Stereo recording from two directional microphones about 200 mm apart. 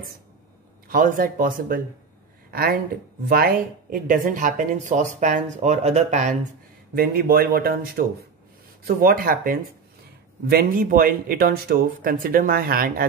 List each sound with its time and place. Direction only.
0.8 s speech: 40° right (ahead or behind)
7.0 s speech: 50° right (ahead or behind)